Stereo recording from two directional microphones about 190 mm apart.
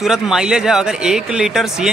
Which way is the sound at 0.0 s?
Centre (ahead or behind).